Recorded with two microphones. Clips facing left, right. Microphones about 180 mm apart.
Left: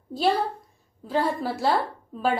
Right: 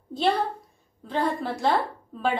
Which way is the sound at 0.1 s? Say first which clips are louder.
Left 1 dB; 5° left (ahead or behind).